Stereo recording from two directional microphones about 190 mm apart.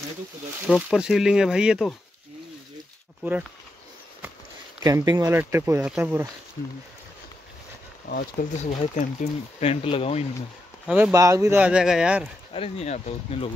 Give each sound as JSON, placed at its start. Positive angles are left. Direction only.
{"t": 0.7, "sound": "speech", "side_deg": -5}
{"t": 4.8, "sound": "speech", "side_deg": -15}
{"t": 8.1, "sound": "speech", "side_deg": 45}
{"t": 10.9, "sound": "speech", "side_deg": -10}
{"t": 12.5, "sound": "speech", "side_deg": 30}